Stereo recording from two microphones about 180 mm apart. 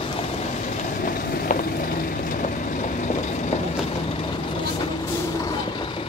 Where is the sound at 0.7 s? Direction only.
50° left (ahead or behind).